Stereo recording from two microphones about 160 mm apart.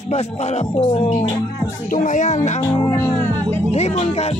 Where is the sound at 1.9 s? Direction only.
55° left (ahead or behind).